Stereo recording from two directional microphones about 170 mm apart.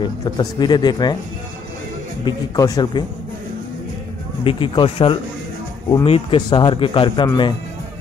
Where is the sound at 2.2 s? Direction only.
25° left (ahead or behind).